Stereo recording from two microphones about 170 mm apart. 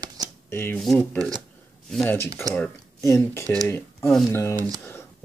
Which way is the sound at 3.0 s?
15° left (ahead or behind).